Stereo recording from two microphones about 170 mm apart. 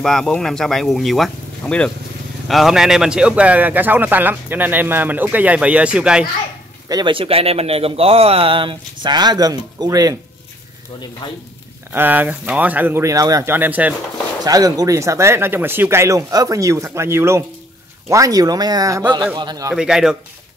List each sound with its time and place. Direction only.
0.0 s a man's voice: 5° left (ahead or behind)
6.9 s speech: 25° right (ahead or behind)
11.9 s a man's voice: 10° right (ahead or behind)
14.4 s a man's voice: 20° right (ahead or behind)
19.7 s speech: 5° right (ahead or behind)